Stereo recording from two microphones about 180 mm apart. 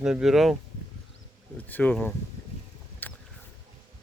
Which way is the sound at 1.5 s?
10° left (ahead or behind).